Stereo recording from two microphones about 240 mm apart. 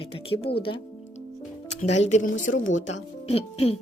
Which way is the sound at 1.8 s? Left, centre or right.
Left.